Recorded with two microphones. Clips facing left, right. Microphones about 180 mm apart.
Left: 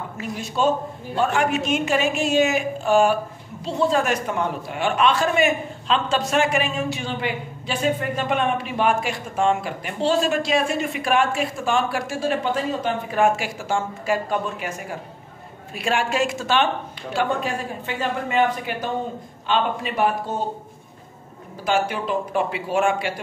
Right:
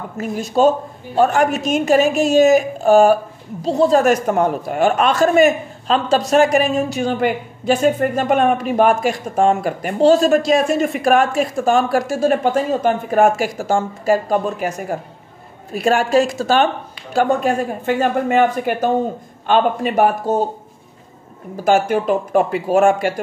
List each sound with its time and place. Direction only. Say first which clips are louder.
0.2 s a woman's voice: right 8 dB; 40° right (ahead or behind)
21.6 s a man's voice: right 7 dB; 45° right (ahead or behind)